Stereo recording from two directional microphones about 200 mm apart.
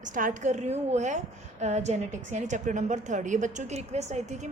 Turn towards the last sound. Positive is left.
turn(degrees=-35)  # may be behind; listen again after turning